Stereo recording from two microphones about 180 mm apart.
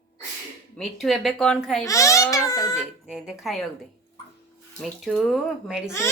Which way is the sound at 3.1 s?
5° right (ahead or behind).